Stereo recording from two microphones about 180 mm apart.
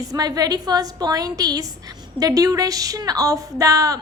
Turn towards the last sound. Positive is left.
turn(degrees=-20)  # may be behind; listen again after turning